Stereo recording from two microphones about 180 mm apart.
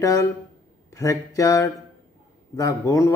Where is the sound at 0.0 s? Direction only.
20° left (ahead or behind).